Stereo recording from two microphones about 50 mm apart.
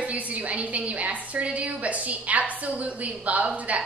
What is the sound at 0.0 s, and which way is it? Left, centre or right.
A woman's voice, right.